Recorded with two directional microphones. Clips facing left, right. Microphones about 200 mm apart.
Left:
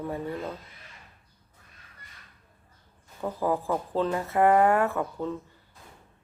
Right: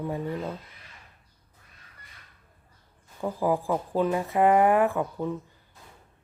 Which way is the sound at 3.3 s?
15° right (ahead or behind).